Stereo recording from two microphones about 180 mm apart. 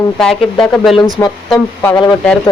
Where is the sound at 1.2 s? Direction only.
15° left (ahead or behind).